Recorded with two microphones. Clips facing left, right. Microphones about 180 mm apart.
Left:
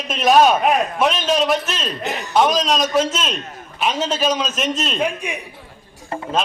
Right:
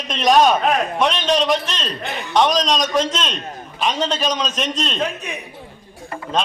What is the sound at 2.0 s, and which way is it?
Speech, 40° left (ahead or behind).